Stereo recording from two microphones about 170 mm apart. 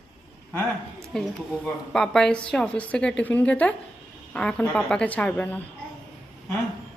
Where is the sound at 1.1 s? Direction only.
5° left (ahead or behind).